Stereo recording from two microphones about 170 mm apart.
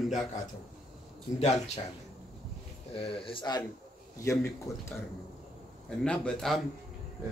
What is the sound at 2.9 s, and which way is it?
Speech, 30° left (ahead or behind).